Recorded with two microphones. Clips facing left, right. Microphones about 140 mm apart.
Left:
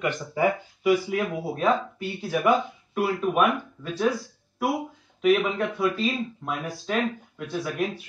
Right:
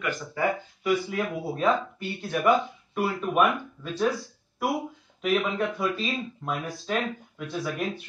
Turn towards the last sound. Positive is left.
turn(degrees=0)  # may be behind; listen again after turning